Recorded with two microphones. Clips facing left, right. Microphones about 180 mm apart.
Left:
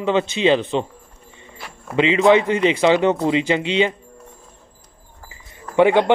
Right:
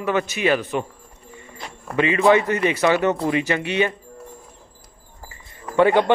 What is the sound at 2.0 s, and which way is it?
A man's voice, 20° left (ahead or behind).